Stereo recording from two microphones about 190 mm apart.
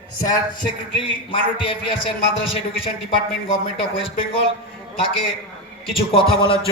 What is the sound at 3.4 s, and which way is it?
Speech, 30° left (ahead or behind).